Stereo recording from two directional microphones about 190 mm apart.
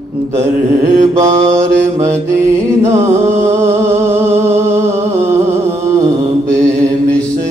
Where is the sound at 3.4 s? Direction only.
15° right (ahead or behind).